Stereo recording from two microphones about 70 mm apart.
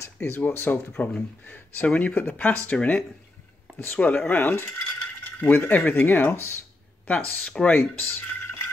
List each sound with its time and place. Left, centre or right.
0.0 s speech: left
7.1 s speech: centre